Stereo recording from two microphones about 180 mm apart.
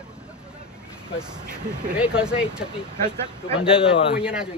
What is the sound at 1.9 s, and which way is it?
Speech, 5° right (ahead or behind).